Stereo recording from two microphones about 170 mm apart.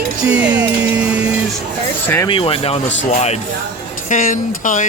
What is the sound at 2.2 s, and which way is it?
Speech, 30° left (ahead or behind).